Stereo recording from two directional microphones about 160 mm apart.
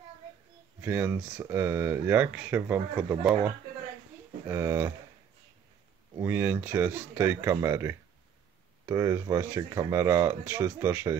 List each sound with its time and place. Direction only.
0.7 s speech: 15° right (ahead or behind)
4.5 s speech: 15° right (ahead or behind)
6.1 s speech: 10° right (ahead or behind)